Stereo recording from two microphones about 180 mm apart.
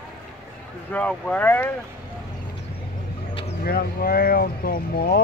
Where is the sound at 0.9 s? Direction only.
10° left (ahead or behind).